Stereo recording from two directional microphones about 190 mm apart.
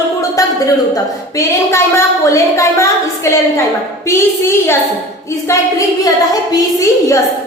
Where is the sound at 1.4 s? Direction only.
15° left (ahead or behind).